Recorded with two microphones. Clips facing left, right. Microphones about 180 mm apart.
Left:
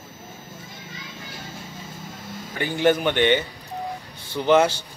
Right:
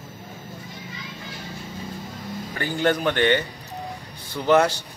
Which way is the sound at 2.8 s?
10° left (ahead or behind).